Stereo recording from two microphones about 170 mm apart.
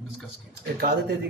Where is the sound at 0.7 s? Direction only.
70° right (ahead or behind).